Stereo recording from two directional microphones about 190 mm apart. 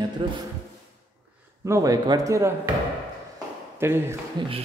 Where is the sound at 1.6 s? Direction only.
15° right (ahead or behind).